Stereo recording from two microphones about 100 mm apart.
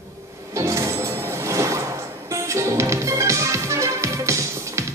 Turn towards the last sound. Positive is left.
turn(degrees=-30)  # may be behind; listen again after turning